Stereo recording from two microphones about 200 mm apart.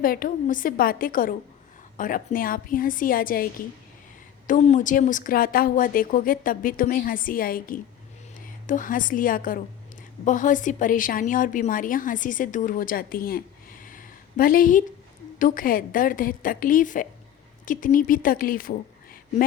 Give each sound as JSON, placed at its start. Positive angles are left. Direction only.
{"t": 0.0, "sound": "a woman's voice", "side_deg": 45}
{"t": 4.4, "sound": "a woman's voice", "side_deg": 40}